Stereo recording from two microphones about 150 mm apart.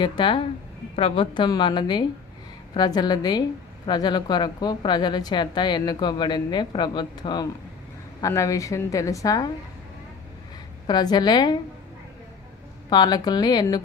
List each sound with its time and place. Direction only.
0.0 s a woman's voice: 30° left (ahead or behind)
10.8 s a woman's voice: 30° left (ahead or behind)
12.9 s a woman's voice: 25° left (ahead or behind)